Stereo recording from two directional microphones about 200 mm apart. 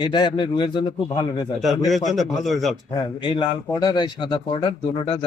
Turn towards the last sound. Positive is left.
turn(degrees=25)  # may be behind; listen again after turning